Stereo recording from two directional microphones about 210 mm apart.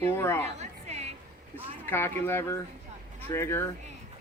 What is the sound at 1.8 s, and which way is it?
Speech, 10° left (ahead or behind).